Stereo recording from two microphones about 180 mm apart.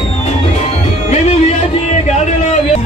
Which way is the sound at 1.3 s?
35° left (ahead or behind).